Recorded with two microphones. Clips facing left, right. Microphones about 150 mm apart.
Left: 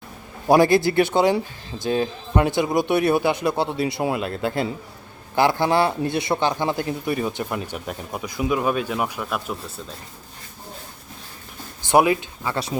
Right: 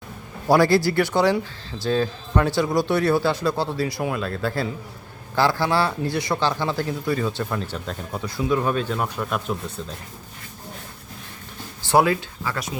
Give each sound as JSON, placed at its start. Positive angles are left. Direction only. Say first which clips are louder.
{"t": 0.4, "sound": "speech", "louder": "left 1 dB", "side_deg": 20}
{"t": 11.9, "sound": "speech", "louder": "left 1 dB", "side_deg": 20}